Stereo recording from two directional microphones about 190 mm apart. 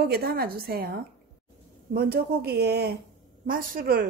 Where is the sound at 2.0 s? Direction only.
55° right (ahead or behind).